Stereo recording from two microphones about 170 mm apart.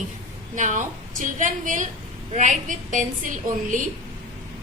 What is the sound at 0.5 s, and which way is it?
A woman's voice, 45° right (ahead or behind).